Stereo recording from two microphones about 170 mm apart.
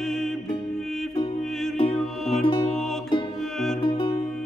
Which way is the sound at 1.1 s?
30° left (ahead or behind).